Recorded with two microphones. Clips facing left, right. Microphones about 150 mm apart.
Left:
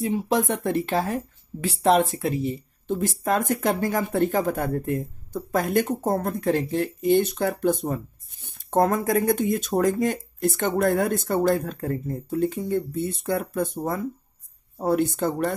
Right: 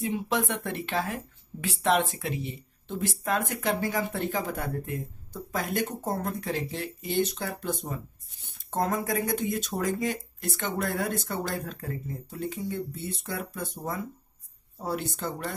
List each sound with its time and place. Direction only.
0.0 s speech: 35° left (ahead or behind); by 15.5 s 55° left (ahead or behind)